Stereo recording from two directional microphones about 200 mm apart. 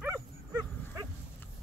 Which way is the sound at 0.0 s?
15° right (ahead or behind).